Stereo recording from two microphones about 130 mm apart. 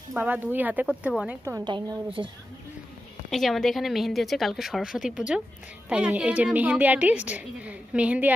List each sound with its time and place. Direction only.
0.1 s a woman's voice: 15° right (ahead or behind)
1.6 s speech: 35° right (ahead or behind)
3.3 s a woman's voice: centre (ahead or behind)